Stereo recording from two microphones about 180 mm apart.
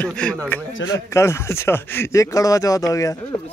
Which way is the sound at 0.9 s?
15° left (ahead or behind).